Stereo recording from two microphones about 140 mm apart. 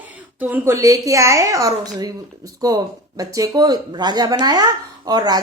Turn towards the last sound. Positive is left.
turn(degrees=-30)  # may be behind; listen again after turning